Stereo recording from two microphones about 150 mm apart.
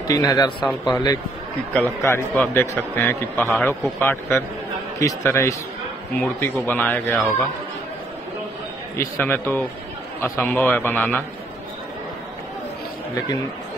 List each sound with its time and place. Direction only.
0.1 s a man's voice: 25° left (ahead or behind)
7.1 s speech: centre (ahead or behind)
8.9 s a man's voice: 15° left (ahead or behind)